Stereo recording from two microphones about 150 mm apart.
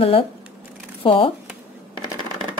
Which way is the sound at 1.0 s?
35° left (ahead or behind).